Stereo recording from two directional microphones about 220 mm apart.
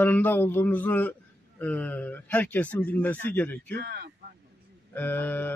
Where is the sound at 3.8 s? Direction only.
45° right (ahead or behind).